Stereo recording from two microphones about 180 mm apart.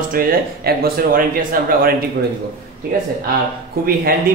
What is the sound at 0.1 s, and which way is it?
Speech, 55° right (ahead or behind).